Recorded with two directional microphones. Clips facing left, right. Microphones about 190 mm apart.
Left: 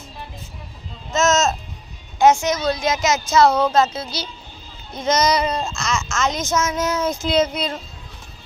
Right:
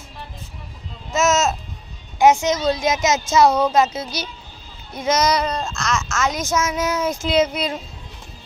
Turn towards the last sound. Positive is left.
turn(degrees=-10)  # may be behind; listen again after turning